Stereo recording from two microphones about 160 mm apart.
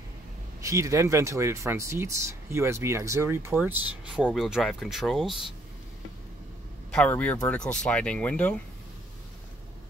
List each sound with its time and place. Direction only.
0.6 s speech: 20° right (ahead or behind); by 5.4 s centre (ahead or behind)
6.9 s speech: 5° left (ahead or behind)